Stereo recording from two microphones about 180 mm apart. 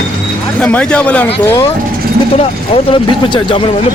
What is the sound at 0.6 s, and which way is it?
Speech, 5° left (ahead or behind).